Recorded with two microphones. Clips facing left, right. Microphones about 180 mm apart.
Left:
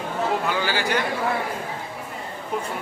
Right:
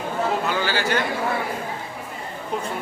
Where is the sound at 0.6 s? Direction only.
15° left (ahead or behind).